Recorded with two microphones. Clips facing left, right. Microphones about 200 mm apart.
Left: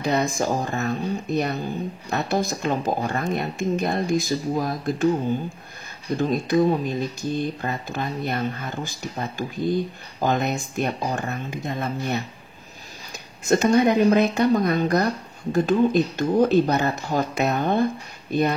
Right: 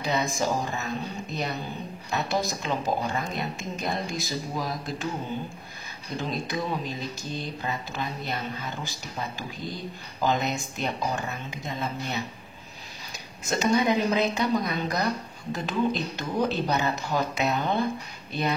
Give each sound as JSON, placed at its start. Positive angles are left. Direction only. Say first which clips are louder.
{"t": 0.0, "sound": "speech", "louder": "left 4 dB", "side_deg": 50}
{"t": 6.1, "sound": "speech", "louder": "left 10 dB", "side_deg": 50}
{"t": 13.5, "sound": "speech", "louder": "left 6 dB", "side_deg": 55}